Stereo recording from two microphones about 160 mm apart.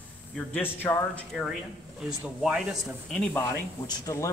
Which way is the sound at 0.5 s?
10° left (ahead or behind).